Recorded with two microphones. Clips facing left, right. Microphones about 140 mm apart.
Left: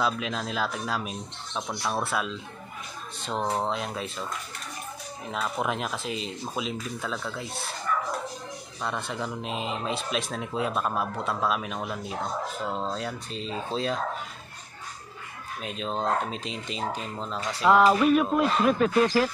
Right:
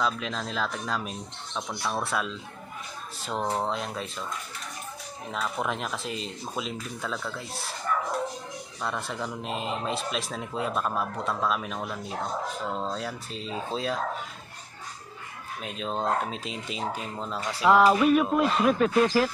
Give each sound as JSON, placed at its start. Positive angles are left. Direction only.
{"t": 0.0, "sound": "speech", "side_deg": 5}
{"t": 2.0, "sound": "speech", "side_deg": 0}
{"t": 5.3, "sound": "speech", "side_deg": 5}
{"t": 8.8, "sound": "speech", "side_deg": 0}
{"t": 15.6, "sound": "speech", "side_deg": 0}